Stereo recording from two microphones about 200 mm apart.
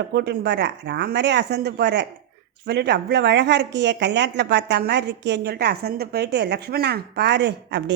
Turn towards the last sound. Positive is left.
turn(degrees=-60)  # may be behind; listen again after turning